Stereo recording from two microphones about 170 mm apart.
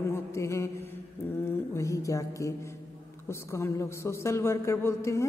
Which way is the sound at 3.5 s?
15° left (ahead or behind).